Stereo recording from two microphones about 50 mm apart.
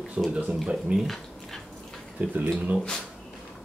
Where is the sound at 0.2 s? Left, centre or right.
Right.